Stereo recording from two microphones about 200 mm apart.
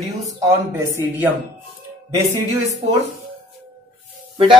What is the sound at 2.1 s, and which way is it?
Speech, 15° right (ahead or behind).